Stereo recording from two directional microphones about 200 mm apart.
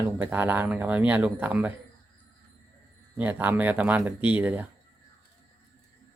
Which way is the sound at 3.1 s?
10° right (ahead or behind).